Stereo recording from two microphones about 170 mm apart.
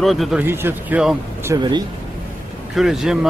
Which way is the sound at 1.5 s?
25° right (ahead or behind).